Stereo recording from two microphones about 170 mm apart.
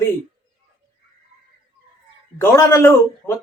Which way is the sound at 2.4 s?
15° left (ahead or behind).